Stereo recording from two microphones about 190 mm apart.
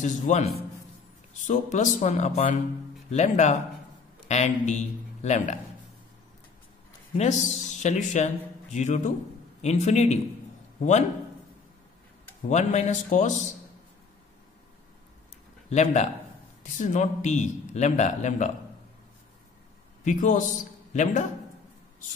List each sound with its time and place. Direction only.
0.0 s a man's voice: 35° left (ahead or behind)
1.5 s a man's voice: 40° left (ahead or behind)
7.2 s a man's voice: 35° left (ahead or behind)
12.4 s a man's voice: 35° left (ahead or behind)
15.7 s a man's voice: 35° left (ahead or behind)
20.1 s a man's voice: 40° left (ahead or behind)